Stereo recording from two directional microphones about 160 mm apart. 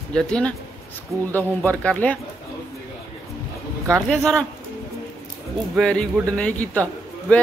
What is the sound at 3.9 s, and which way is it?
Speech, 5° left (ahead or behind).